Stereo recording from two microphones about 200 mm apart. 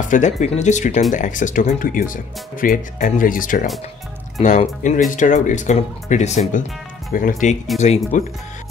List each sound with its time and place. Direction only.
0.1 s speech: 35° left (ahead or behind)